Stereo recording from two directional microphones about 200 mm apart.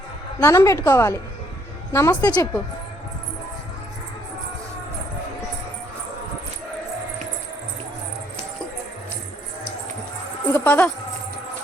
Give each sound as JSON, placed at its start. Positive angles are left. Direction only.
{"t": 0.3, "sound": "a woman's voice", "side_deg": 15}
{"t": 10.5, "sound": "a woman's voice", "side_deg": 10}